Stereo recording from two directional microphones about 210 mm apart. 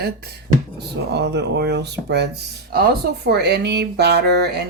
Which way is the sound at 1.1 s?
55° right (ahead or behind).